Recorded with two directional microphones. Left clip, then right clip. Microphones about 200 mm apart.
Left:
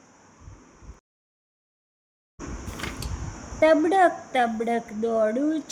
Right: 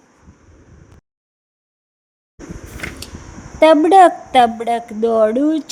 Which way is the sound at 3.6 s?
30° right (ahead or behind).